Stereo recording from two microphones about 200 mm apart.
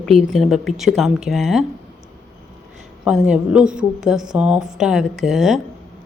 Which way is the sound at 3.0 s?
5° right (ahead or behind).